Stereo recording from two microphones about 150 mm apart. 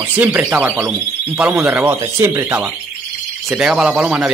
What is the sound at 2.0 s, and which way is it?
Speech, 20° right (ahead or behind).